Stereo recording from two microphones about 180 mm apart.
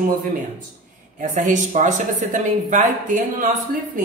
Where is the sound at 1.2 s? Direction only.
45° right (ahead or behind).